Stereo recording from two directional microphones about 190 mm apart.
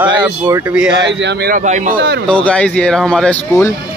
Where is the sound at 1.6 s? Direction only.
40° right (ahead or behind).